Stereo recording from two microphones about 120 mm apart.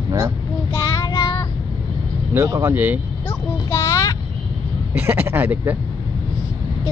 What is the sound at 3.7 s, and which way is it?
Child singing, 25° left (ahead or behind).